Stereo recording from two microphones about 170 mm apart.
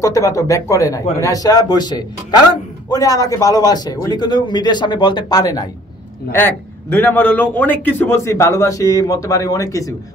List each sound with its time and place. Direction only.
0.0 s a man's voice: 20° left (ahead or behind)